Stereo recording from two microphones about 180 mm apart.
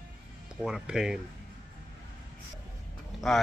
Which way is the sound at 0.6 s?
5° right (ahead or behind).